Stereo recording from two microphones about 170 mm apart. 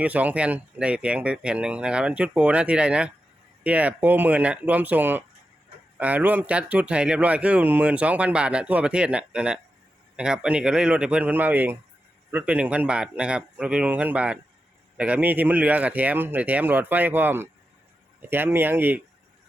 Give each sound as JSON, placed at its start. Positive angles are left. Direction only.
{"t": 0.0, "sound": "speech", "side_deg": -10}